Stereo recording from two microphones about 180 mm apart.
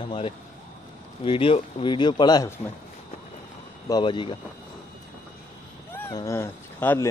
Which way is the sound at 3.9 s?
25° left (ahead or behind).